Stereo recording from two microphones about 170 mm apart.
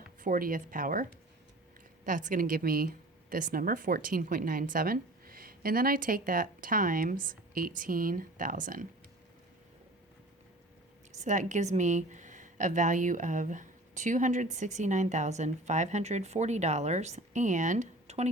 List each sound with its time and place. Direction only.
0.2 s a woman's voice: 55° right (ahead or behind)
2.0 s speech: 50° right (ahead or behind)
11.2 s a woman's voice: 45° right (ahead or behind)